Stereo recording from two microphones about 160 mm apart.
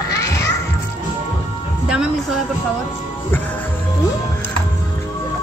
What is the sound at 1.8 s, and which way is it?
Music, 5° right (ahead or behind).